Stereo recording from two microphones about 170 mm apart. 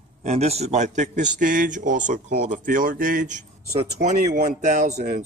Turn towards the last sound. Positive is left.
turn(degrees=-45)  # may be behind; listen again after turning